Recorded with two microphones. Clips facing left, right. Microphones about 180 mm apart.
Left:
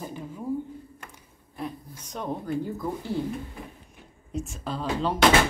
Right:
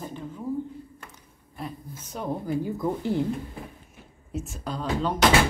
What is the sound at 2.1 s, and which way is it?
Speech, 10° right (ahead or behind).